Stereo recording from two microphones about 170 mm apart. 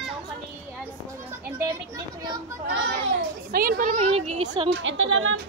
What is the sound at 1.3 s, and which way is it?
A child's voice, 15° right (ahead or behind).